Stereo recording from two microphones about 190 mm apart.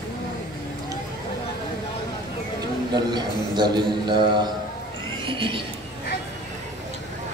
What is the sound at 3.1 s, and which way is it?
A man's voice, 20° right (ahead or behind).